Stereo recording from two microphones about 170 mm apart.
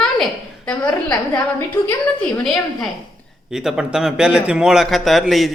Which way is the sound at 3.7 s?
5° right (ahead or behind).